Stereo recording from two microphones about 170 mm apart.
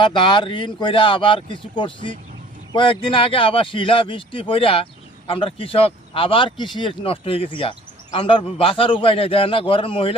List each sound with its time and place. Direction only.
0.0 s speech: 30° left (ahead or behind)